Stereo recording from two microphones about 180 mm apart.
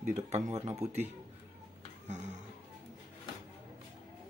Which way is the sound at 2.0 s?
40° right (ahead or behind).